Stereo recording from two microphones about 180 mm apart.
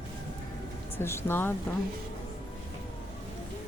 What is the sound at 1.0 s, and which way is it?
Speech, 15° left (ahead or behind).